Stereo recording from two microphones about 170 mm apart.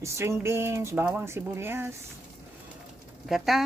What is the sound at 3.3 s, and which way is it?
Speech, centre (ahead or behind).